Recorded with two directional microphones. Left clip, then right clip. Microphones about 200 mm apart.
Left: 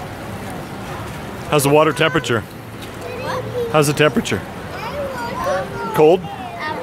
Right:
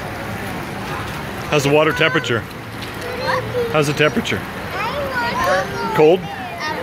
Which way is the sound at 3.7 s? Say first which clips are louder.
Left 2 dB; 25° left (ahead or behind).